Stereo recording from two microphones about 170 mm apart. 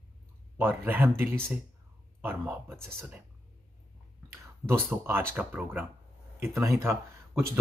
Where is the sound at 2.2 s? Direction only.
10° right (ahead or behind).